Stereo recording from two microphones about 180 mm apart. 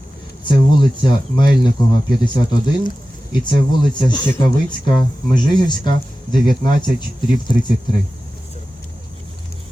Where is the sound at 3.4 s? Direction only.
25° left (ahead or behind).